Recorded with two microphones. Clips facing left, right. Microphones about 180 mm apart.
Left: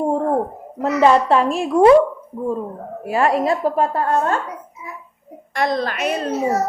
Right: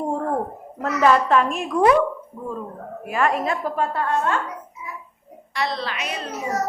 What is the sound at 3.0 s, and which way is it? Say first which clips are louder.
A woman's voice: left 4 dB; 35° left (ahead or behind).